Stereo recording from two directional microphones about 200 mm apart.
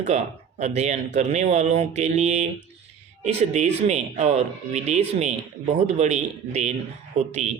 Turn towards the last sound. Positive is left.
turn(degrees=-35)  # may be behind; listen again after turning